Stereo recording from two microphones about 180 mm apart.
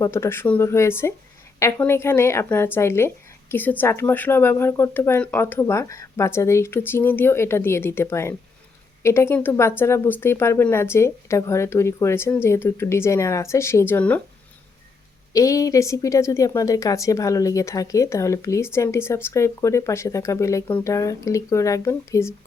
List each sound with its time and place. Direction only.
0.0 s speech: 15° left (ahead or behind)
15.3 s speech: 20° left (ahead or behind)